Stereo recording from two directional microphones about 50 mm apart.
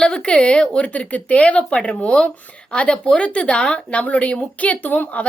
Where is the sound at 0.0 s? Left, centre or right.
Centre.